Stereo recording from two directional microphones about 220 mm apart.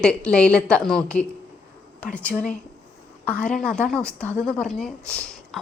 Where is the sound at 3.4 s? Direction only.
5° left (ahead or behind).